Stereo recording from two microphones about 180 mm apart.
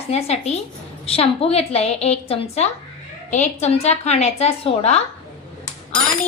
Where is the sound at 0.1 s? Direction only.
35° left (ahead or behind).